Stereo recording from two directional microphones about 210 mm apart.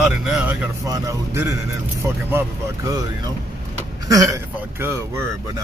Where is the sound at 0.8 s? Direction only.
15° right (ahead or behind).